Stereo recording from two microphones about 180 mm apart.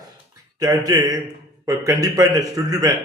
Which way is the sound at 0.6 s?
20° right (ahead or behind).